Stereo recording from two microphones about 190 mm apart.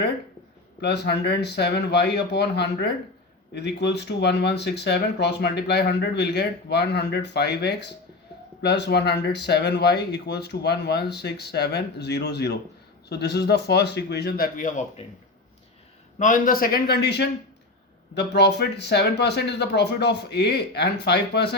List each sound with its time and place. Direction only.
0.8 s speech: 60° left (ahead or behind); by 15.0 s 40° left (ahead or behind)
16.1 s a man's voice: 40° left (ahead or behind); by 21.5 s 60° left (ahead or behind)